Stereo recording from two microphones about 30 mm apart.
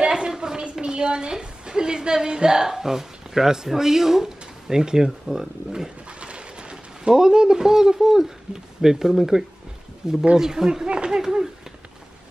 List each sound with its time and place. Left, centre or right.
0.0 s a woman's voice: right
6.0 s a sound: right
7.2 s speech: right